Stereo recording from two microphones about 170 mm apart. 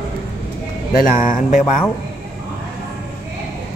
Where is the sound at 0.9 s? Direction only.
50° left (ahead or behind).